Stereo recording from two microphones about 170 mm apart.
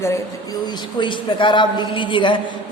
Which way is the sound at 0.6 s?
30° left (ahead or behind).